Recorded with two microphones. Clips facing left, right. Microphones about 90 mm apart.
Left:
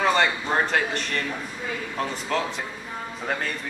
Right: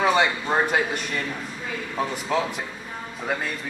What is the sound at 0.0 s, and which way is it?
Speech, 5° right (ahead or behind).